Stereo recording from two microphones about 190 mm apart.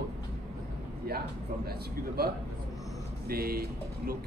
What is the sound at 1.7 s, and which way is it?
A man's voice, 55° right (ahead or behind).